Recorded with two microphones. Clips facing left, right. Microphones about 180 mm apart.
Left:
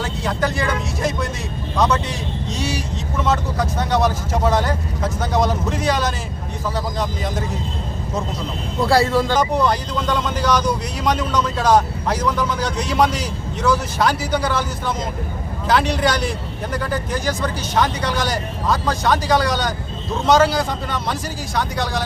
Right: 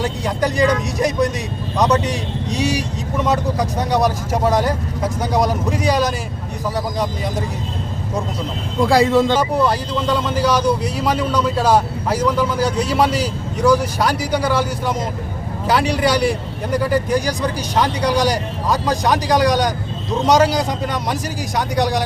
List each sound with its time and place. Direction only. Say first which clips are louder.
0.0 s speech: right 2 dB; 15° right (ahead or behind)
8.8 s speech: right 3 dB; 15° right (ahead or behind)
9.4 s speech: right 1 dB; 10° right (ahead or behind)